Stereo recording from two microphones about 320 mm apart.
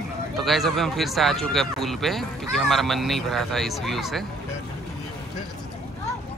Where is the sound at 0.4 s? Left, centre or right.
Centre.